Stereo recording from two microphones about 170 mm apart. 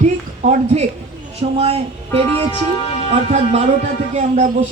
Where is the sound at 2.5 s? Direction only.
30° left (ahead or behind).